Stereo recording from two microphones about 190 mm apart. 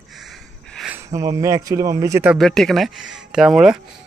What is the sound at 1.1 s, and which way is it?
A man's voice, 15° right (ahead or behind).